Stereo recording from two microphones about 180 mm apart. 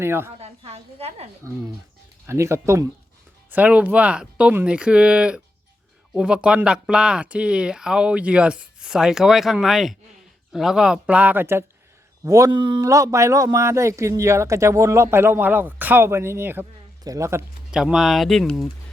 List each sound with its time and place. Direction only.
0.0 s speech: 15° right (ahead or behind)
0.3 s a woman's voice: 35° right (ahead or behind)
2.2 s speech: 15° right (ahead or behind)
17.7 s speech: 5° right (ahead or behind)